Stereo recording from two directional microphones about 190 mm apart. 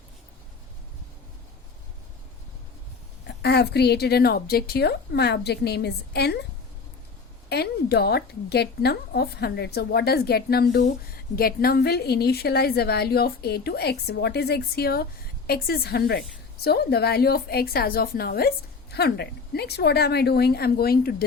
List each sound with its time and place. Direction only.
3.2 s a woman's voice: 60° left (ahead or behind)
7.5 s a woman's voice: 60° left (ahead or behind)